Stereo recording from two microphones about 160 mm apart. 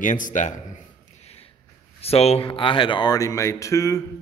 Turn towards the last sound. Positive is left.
turn(degrees=20)  # may be behind; listen again after turning